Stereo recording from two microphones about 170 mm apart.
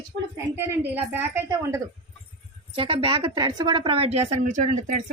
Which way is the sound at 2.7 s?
30° right (ahead or behind).